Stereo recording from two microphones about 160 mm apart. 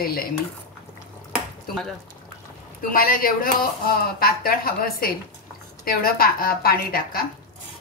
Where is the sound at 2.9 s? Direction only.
65° left (ahead or behind).